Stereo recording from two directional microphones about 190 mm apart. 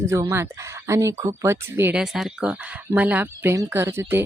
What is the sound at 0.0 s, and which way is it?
Speech, 15° right (ahead or behind).